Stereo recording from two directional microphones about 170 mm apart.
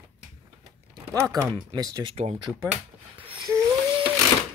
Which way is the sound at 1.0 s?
20° right (ahead or behind).